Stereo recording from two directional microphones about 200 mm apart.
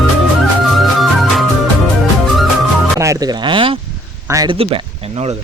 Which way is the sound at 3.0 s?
15° right (ahead or behind).